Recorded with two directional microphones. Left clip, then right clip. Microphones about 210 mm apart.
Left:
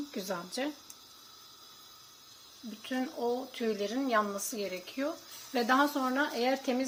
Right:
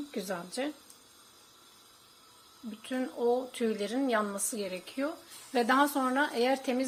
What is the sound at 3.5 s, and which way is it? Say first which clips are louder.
Speech: right 1 dB; 15° right (ahead or behind).